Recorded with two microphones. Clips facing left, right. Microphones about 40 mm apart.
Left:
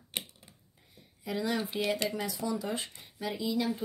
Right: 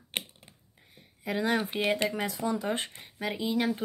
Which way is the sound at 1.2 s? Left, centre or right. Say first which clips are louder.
Right 4 dB; right.